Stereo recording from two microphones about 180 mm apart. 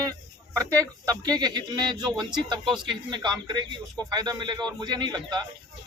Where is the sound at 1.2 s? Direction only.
20° right (ahead or behind).